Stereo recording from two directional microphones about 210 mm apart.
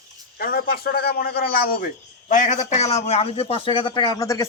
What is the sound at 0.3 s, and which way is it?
A man's voice, 45° left (ahead or behind).